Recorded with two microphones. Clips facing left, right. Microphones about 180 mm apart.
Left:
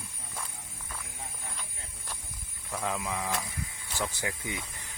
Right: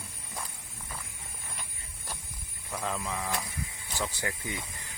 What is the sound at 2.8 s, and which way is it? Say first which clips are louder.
Speech: left 1 dB; 15° left (ahead or behind).